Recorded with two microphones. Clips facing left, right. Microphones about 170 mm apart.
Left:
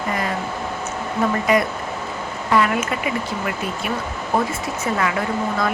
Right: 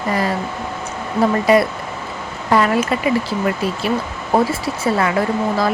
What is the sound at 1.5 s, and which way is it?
Speech, 35° right (ahead or behind).